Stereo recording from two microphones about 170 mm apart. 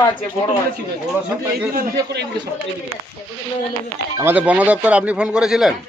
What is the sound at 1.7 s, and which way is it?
Speech, 60° right (ahead or behind).